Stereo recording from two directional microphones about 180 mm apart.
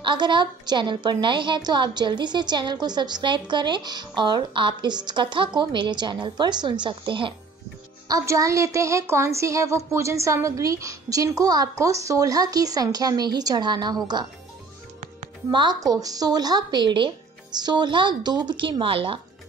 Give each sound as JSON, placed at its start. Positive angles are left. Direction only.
{"t": 0.0, "sound": "a woman's voice", "side_deg": -25}
{"t": 15.5, "sound": "a woman's voice", "side_deg": -25}